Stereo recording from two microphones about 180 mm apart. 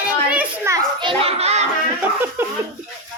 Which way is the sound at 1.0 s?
30° right (ahead or behind).